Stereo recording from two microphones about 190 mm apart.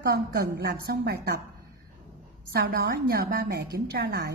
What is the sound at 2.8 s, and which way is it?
A woman's voice, 55° right (ahead or behind).